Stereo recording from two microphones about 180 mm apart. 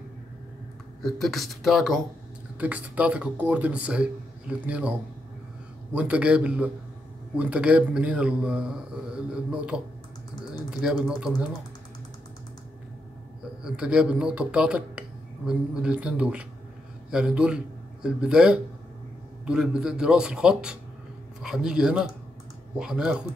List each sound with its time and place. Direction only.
1.0 s speech: centre (ahead or behind)
5.9 s speech: 5° right (ahead or behind)
13.7 s a man's voice: 5° right (ahead or behind)